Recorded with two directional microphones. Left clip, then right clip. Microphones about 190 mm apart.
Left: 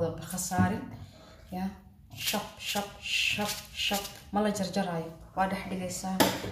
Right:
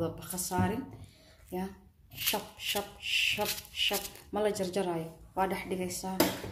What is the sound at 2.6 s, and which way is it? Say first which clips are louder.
A woman's voice: left 1 dB; 45° right (ahead or behind).